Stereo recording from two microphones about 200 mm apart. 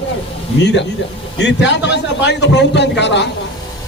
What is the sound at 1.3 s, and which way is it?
A man's voice, 60° left (ahead or behind).